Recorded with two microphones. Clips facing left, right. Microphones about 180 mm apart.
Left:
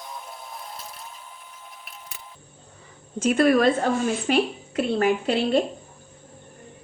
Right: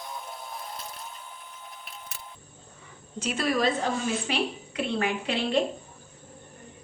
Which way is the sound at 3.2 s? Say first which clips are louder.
Left 8 dB; 55° left (ahead or behind).